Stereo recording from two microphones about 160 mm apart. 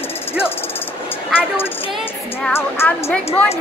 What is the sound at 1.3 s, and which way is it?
Speech, 15° left (ahead or behind).